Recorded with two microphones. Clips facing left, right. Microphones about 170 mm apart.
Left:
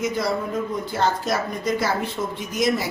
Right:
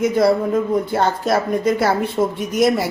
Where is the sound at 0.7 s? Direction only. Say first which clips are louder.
Right 5 dB; 60° right (ahead or behind).